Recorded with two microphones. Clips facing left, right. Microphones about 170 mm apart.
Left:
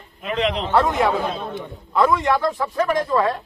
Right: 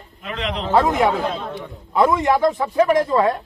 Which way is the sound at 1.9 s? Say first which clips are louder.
Right 2 dB; 20° right (ahead or behind).